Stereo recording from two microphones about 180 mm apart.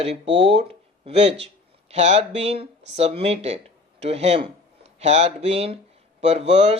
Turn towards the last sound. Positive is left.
turn(degrees=-35)  # may be behind; listen again after turning